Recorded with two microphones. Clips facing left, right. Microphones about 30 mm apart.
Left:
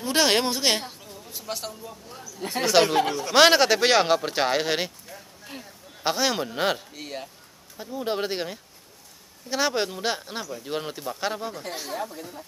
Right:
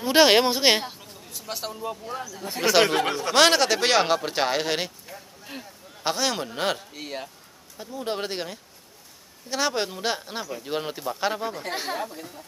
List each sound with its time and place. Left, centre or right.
0.0 s speech: centre
1.4 s speech: centre
3.3 s speech: centre
5.0 s a sound: centre
6.0 s speech: centre
6.9 s speech: centre
7.7 s speech: centre
11.7 s speech: right
12.1 s speech: centre